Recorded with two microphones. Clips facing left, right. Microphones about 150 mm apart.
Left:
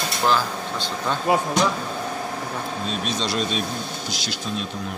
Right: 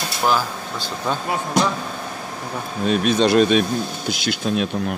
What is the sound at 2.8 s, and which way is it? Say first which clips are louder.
Speech: right 12 dB; 60° right (ahead or behind).